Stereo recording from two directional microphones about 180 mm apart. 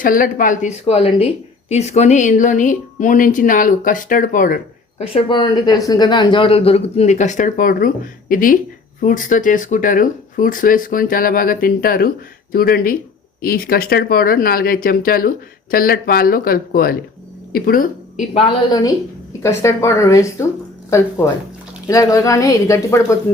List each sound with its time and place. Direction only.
0.0 s speech: 50° left (ahead or behind)
5.1 s a woman's voice: 25° left (ahead or behind); by 18.3 s 55° left (ahead or behind)
18.3 s a woman's voice: 25° left (ahead or behind)
21.8 s a woman's voice: 20° left (ahead or behind)